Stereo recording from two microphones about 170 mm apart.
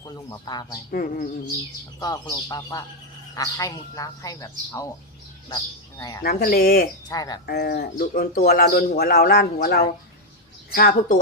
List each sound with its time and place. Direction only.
0.0 s speech: 20° left (ahead or behind)
0.9 s speech: 55° left (ahead or behind)
2.3 s speech: 20° left (ahead or behind)
6.2 s speech: 60° left (ahead or behind)
7.1 s speech: 20° left (ahead or behind)
7.4 s speech: 65° left (ahead or behind)
10.8 s a woman's voice: 55° left (ahead or behind)